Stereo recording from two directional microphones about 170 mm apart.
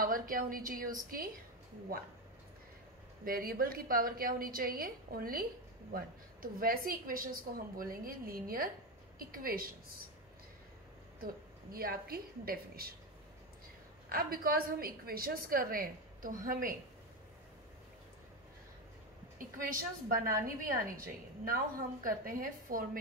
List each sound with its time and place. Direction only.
0.0 s a woman's voice: 55° right (ahead or behind)
3.3 s a woman's voice: 60° right (ahead or behind)
11.7 s a woman's voice: 60° right (ahead or behind)
14.0 s a woman's voice: 60° right (ahead or behind)
19.3 s a woman's voice: 55° right (ahead or behind)